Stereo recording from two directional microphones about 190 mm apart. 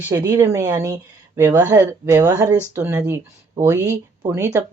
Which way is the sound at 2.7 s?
10° right (ahead or behind).